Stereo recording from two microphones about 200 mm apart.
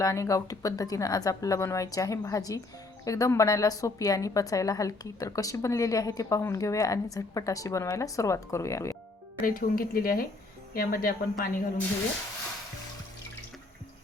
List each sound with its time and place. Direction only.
0.0 s a woman's voice: 15° left (ahead or behind)
9.4 s speech: 45° left (ahead or behind)